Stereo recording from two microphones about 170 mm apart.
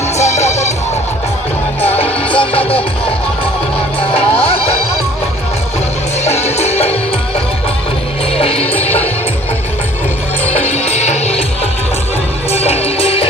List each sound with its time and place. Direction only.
0.2 s music: 40° left (ahead or behind)
2.0 s music: 30° left (ahead or behind)
4.1 s music: 35° left (ahead or behind)
6.2 s music: 40° left (ahead or behind)
8.4 s music: 35° left (ahead or behind)
10.4 s music: 10° left (ahead or behind)
10.7 s music: 40° left (ahead or behind)
12.5 s music: 35° left (ahead or behind)